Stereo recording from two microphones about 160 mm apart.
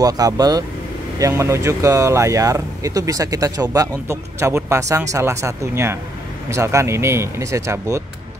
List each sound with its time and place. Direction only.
0.0 s speech: 25° right (ahead or behind)